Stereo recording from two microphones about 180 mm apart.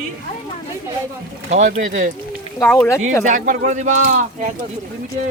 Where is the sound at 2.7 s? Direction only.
15° left (ahead or behind).